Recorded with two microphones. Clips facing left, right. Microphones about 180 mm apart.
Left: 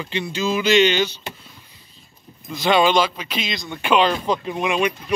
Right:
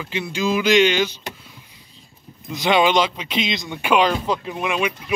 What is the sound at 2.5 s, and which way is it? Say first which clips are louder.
Speech: even; 15° right (ahead or behind).